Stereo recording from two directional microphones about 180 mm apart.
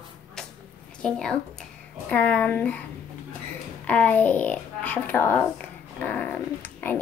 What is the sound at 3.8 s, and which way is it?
A child's voice, 10° left (ahead or behind).